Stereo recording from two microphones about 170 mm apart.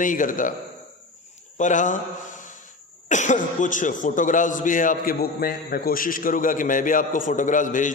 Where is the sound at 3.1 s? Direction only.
45° left (ahead or behind).